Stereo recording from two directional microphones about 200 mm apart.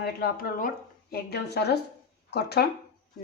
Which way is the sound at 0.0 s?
50° left (ahead or behind).